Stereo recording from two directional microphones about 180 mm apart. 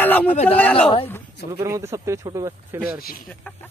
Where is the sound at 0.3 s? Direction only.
35° left (ahead or behind).